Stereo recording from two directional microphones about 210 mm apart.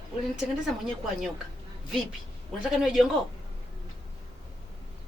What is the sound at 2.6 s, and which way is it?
Speech, centre (ahead or behind).